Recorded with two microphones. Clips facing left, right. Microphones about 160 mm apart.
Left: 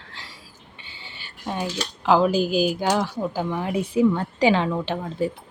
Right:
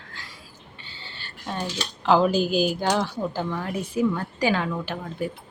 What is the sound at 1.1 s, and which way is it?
Speech, 10° left (ahead or behind).